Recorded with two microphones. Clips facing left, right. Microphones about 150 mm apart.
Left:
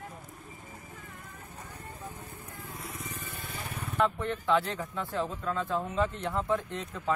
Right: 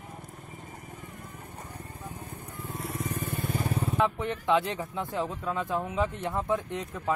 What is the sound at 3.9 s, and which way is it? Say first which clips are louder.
Speech: left 2 dB; 15° right (ahead or behind).